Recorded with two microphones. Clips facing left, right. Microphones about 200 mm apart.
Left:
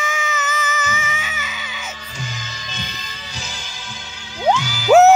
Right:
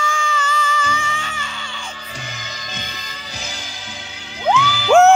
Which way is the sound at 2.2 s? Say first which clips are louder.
Left 1 dB; 55° right (ahead or behind).